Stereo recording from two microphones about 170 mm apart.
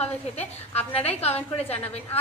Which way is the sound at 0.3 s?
40° left (ahead or behind).